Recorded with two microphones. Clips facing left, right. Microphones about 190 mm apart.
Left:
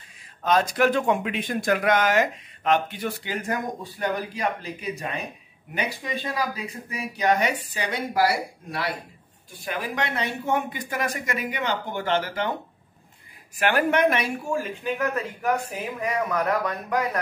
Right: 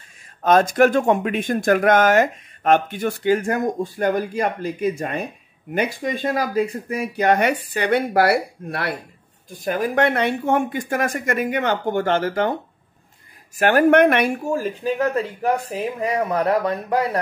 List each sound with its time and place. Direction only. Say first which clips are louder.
0.4 s speech: right 6 dB; 50° right (ahead or behind)
9.5 s speech: right 8 dB; 45° right (ahead or behind)
13.6 s speech: right 7 dB; 45° right (ahead or behind)
14.4 s speech: right 5 dB; 40° right (ahead or behind)